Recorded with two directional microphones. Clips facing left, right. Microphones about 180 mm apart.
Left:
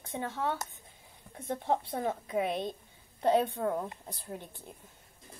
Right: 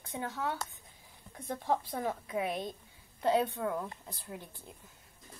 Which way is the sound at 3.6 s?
40° left (ahead or behind).